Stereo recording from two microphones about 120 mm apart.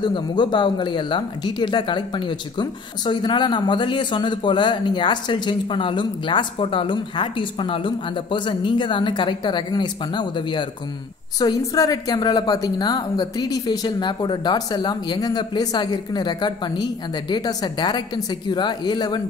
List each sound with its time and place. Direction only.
0.0 s speech: 40° left (ahead or behind)